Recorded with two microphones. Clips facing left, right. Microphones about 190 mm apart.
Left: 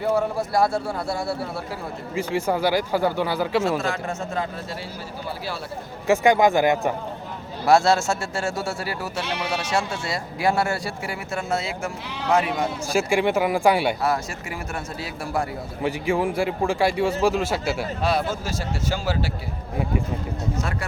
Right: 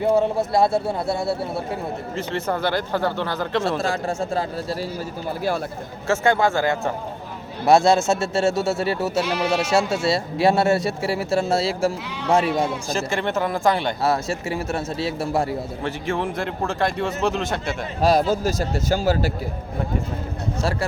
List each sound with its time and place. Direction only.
0.0 s speech: 20° right (ahead or behind)
2.1 s a man's voice: 10° left (ahead or behind)
3.8 s a man's voice: 35° right (ahead or behind)
6.1 s a man's voice: 15° left (ahead or behind)
7.6 s speech: 20° right (ahead or behind)
12.9 s a man's voice: 10° left (ahead or behind)
14.0 s speech: 25° right (ahead or behind)
15.8 s a man's voice: 10° left (ahead or behind)
18.0 s a man's voice: 40° right (ahead or behind)